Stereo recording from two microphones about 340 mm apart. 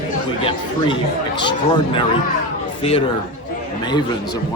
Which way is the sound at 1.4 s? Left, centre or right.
Centre.